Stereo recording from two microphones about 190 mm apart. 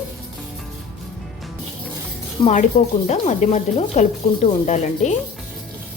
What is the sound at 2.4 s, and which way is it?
Speech, 25° left (ahead or behind).